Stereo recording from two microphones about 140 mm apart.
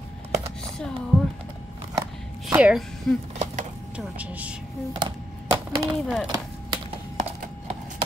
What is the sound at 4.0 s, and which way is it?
Speech, 10° right (ahead or behind).